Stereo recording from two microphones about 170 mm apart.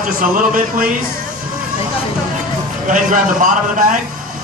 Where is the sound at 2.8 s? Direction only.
50° right (ahead or behind).